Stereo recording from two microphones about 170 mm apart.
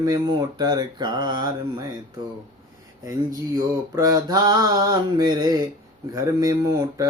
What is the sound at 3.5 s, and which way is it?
Mantra, 20° right (ahead or behind).